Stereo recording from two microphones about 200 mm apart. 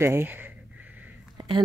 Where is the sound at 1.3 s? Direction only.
20° right (ahead or behind).